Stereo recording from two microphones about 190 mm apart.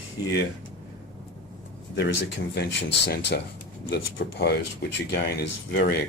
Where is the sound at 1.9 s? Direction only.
65° left (ahead or behind).